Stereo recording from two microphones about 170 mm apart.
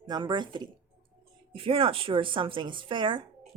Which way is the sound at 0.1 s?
25° right (ahead or behind).